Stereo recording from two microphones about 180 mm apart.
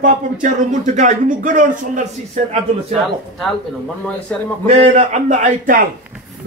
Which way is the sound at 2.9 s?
Centre (ahead or behind).